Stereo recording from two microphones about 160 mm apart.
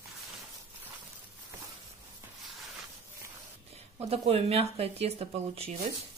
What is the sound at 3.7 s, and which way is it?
Speech, 40° right (ahead or behind).